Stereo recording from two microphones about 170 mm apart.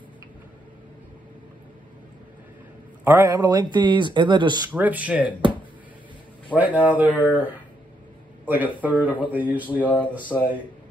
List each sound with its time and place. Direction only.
3.0 s speech: 15° right (ahead or behind)
4.7 s speech: 10° right (ahead or behind)
6.5 s speech: 10° right (ahead or behind)
9.8 s speech: 10° left (ahead or behind)